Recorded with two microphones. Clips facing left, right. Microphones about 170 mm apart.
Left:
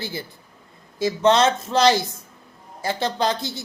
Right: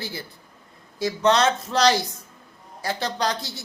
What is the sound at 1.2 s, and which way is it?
Speech, 25° left (ahead or behind).